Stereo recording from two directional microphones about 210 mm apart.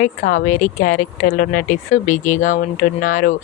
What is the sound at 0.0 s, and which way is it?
A woman's voice, 40° left (ahead or behind).